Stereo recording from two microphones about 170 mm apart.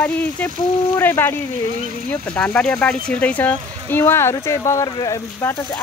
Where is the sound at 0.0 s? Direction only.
10° left (ahead or behind).